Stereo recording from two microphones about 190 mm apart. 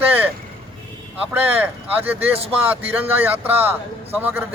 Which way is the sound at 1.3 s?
10° right (ahead or behind).